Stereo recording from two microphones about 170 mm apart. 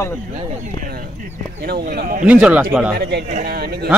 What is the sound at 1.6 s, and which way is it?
Speech, 70° right (ahead or behind).